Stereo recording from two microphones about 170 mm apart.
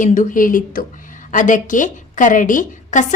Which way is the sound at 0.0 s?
50° left (ahead or behind).